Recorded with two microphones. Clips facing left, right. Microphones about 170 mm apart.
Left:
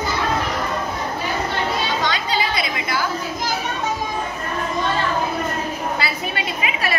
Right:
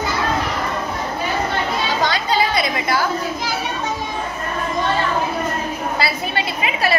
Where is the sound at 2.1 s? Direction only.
35° right (ahead or behind).